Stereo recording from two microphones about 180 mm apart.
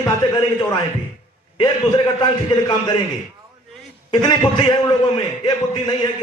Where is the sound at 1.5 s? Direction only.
25° left (ahead or behind).